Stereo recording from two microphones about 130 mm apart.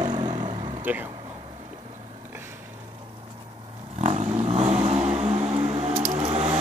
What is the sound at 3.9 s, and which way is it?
Vehicle, 60° right (ahead or behind).